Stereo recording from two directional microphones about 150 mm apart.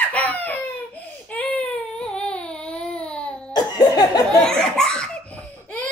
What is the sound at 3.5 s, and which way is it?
Laughter, 25° left (ahead or behind).